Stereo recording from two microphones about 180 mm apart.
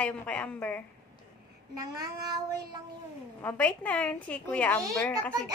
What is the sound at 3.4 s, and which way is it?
A woman's voice, 10° left (ahead or behind).